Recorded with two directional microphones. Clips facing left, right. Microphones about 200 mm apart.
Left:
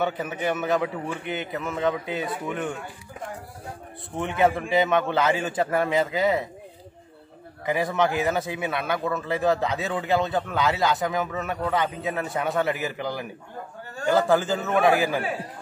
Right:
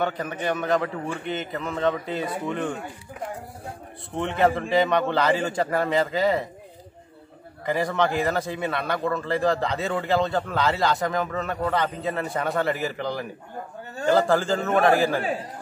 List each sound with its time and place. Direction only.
0.0 s a man's voice: 5° left (ahead or behind)
4.2 s a man's voice: centre (ahead or behind)
7.6 s a man's voice: centre (ahead or behind)